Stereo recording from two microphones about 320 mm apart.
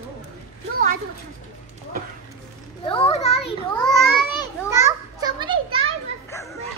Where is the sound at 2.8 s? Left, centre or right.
Centre.